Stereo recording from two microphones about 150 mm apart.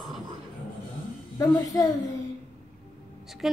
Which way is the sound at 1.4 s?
25° left (ahead or behind).